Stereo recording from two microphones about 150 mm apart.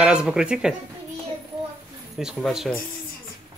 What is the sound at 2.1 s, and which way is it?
Speech, centre (ahead or behind).